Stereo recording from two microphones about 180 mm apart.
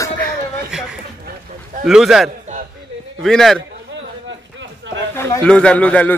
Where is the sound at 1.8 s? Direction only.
5° right (ahead or behind).